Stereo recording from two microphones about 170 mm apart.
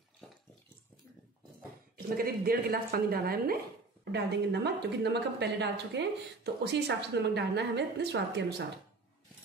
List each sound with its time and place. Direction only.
2.0 s speech: 60° right (ahead or behind)
4.0 s a woman's voice: 80° right